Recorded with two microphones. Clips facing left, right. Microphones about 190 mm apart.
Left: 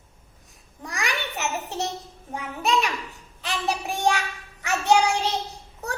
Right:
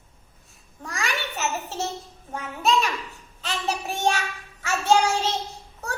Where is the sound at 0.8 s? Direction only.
15° left (ahead or behind).